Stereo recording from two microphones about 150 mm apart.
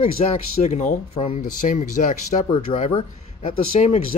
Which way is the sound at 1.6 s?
60° left (ahead or behind).